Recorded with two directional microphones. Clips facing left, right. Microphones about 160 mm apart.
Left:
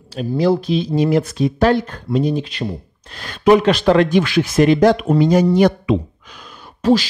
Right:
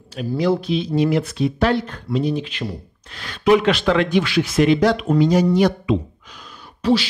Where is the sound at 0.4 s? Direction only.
35° left (ahead or behind).